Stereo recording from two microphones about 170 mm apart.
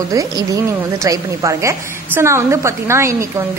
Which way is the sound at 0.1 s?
20° right (ahead or behind).